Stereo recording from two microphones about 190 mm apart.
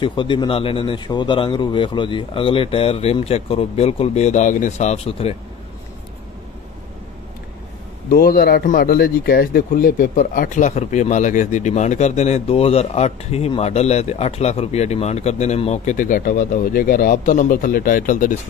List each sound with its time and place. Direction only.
0.0 s speech: 25° left (ahead or behind)
8.1 s speech: 55° left (ahead or behind)